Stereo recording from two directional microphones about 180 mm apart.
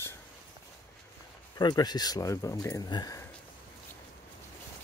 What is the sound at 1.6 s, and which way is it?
Speech, 25° left (ahead or behind).